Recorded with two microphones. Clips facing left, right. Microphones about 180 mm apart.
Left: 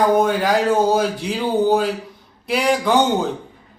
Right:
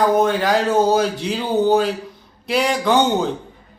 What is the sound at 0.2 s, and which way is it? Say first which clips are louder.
A man's voice: even; 5° left (ahead or behind).